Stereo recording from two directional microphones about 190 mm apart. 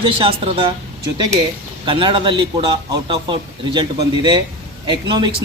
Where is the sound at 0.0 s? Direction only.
30° right (ahead or behind).